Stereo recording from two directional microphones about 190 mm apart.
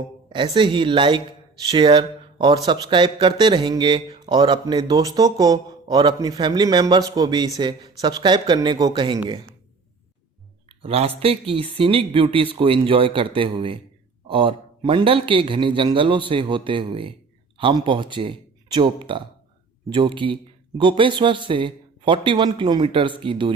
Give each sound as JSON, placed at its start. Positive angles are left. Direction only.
{"t": 0.5, "sound": "speech", "side_deg": -25}
{"t": 10.7, "sound": "a sound", "side_deg": -30}
{"t": 11.2, "sound": "speech", "side_deg": -30}